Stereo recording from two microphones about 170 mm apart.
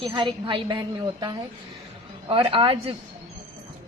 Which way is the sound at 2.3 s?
30° right (ahead or behind).